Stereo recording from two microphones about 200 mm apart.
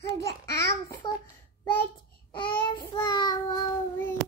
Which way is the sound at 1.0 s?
20° left (ahead or behind).